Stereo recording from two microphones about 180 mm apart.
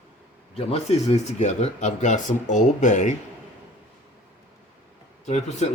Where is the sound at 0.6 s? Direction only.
35° left (ahead or behind).